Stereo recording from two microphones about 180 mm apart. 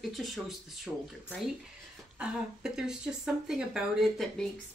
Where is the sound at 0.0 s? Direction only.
Centre (ahead or behind).